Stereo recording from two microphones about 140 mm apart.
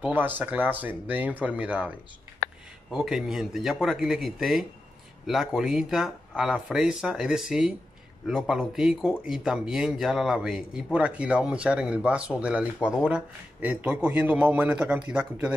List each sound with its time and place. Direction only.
0.0 s speech: 15° right (ahead or behind)
2.4 s a sound: 90° left
2.9 s speech: 5° right (ahead or behind)